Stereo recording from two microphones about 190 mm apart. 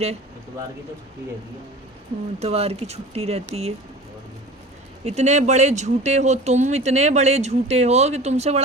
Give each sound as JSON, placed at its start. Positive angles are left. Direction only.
{"t": 2.4, "sound": "speech", "side_deg": -35}
{"t": 5.0, "sound": "speech", "side_deg": -35}